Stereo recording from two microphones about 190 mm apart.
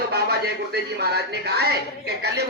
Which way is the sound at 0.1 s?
55° right (ahead or behind).